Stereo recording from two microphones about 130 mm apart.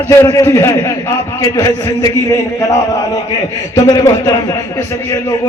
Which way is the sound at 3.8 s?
30° left (ahead or behind).